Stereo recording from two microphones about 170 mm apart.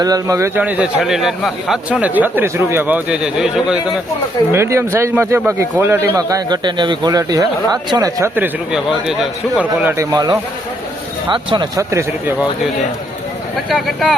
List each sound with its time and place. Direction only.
0.0 s speech: 20° right (ahead or behind); by 3.8 s 5° right (ahead or behind)
4.5 s a man's voice: 15° right (ahead or behind)
13.7 s speech: centre (ahead or behind)